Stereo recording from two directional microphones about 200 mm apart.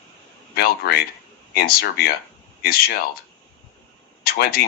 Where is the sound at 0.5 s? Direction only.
50° left (ahead or behind).